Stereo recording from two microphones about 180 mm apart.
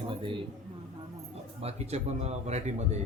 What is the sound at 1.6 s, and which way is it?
A man's voice, 35° right (ahead or behind).